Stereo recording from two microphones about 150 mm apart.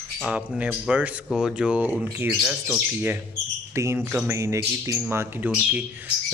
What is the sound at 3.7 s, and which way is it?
A man's voice, 20° right (ahead or behind).